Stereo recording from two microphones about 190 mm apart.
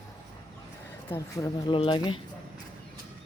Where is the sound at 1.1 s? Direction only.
15° left (ahead or behind).